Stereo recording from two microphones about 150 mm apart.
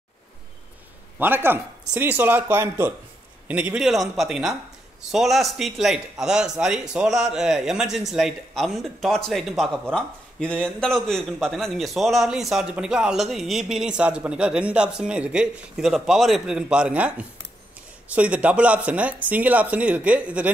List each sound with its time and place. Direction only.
1.1 s a man's voice: 15° right (ahead or behind)